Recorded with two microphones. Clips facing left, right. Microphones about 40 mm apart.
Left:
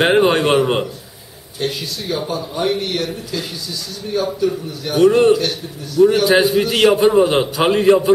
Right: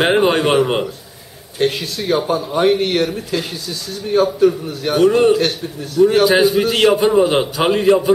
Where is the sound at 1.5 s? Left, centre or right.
Right.